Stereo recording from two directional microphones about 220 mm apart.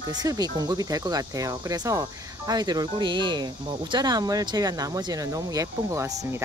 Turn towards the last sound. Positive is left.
turn(degrees=-15)  # may be behind; listen again after turning